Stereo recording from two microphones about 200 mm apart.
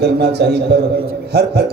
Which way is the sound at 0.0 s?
55° right (ahead or behind).